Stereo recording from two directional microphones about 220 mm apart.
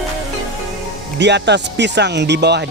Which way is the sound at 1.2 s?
50° right (ahead or behind).